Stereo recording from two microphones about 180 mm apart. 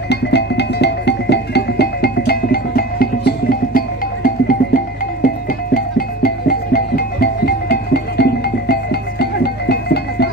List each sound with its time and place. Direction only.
0.1 s music: 70° left (ahead or behind); by 4.6 s 50° left (ahead or behind)
5.9 s music: 60° left (ahead or behind)